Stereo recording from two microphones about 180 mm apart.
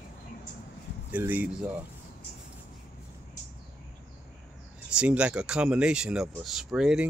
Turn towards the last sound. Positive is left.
turn(degrees=-5)  # may be behind; listen again after turning